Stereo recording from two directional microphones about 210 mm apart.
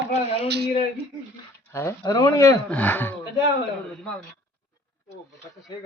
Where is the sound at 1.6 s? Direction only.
15° left (ahead or behind).